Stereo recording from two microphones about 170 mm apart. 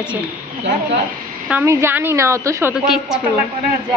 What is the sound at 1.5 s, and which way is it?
A woman's voice, 10° right (ahead or behind).